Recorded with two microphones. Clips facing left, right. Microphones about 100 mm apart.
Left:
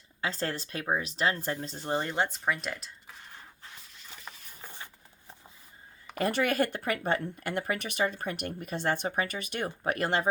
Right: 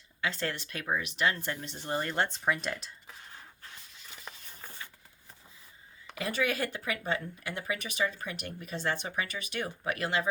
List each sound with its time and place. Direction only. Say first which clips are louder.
0.2 s speech: left 1 dB; 35° left (ahead or behind)
2.0 s speech: even; 15° left (ahead or behind)
2.4 s speech: right 1 dB; centre (ahead or behind)
4.3 s a sound: even; 5° left (ahead or behind)
6.1 s speech: left 4 dB; 50° left (ahead or behind)